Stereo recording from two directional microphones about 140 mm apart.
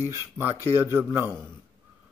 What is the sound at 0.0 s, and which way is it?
Speech, 15° right (ahead or behind).